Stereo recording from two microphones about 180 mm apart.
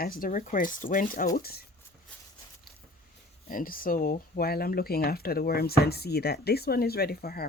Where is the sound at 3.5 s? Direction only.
50° left (ahead or behind).